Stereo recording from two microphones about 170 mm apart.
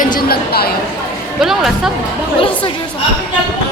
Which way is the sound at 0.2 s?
65° left (ahead or behind).